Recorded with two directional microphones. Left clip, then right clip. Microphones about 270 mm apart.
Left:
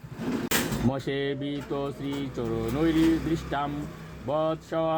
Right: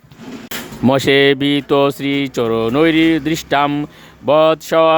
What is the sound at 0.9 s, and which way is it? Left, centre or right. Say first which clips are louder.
Speech: right 18 dB; right.